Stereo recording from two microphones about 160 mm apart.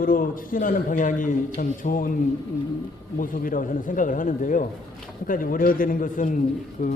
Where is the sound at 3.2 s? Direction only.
60° left (ahead or behind).